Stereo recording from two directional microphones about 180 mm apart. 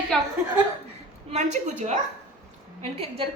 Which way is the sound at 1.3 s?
40° right (ahead or behind).